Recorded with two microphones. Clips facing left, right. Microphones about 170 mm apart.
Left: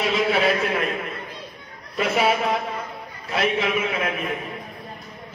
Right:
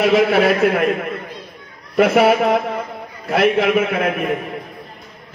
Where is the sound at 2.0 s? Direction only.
60° right (ahead or behind).